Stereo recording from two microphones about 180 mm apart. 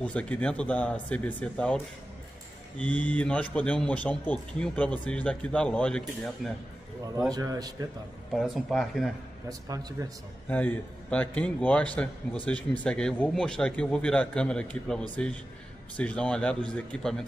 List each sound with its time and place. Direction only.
0.0 s a man's voice: 5° left (ahead or behind)
2.8 s a man's voice: 10° left (ahead or behind)
7.2 s a man's voice: 20° right (ahead or behind)
8.3 s speech: centre (ahead or behind)
9.5 s a man's voice: 20° right (ahead or behind)
10.5 s a man's voice: 10° left (ahead or behind)